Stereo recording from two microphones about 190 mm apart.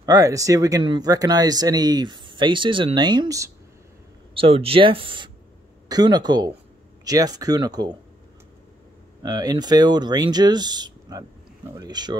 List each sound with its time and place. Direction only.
0.0 s speech: 20° right (ahead or behind)
4.3 s speech: 30° right (ahead or behind)
9.2 s speech: 20° right (ahead or behind)